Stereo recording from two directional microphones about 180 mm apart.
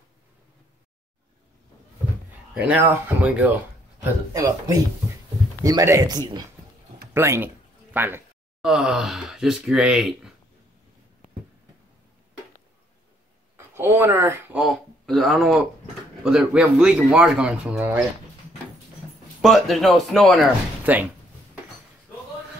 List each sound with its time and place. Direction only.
2.5 s speech: 10° right (ahead or behind)
4.0 s speech: 20° right (ahead or behind); by 10.3 s 5° right (ahead or behind)
13.6 s a sound: 15° right (ahead or behind)
16.3 s speech: 5° right (ahead or behind)
19.4 s speech: centre (ahead or behind)